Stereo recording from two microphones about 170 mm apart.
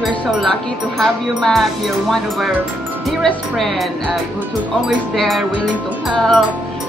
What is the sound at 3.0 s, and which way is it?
Speech, centre (ahead or behind).